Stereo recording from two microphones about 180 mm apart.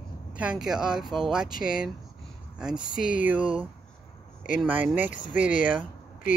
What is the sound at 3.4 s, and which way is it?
Speech, 30° right (ahead or behind).